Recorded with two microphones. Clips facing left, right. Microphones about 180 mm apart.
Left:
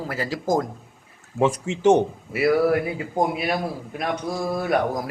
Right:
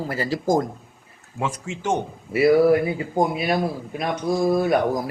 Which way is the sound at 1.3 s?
20° left (ahead or behind).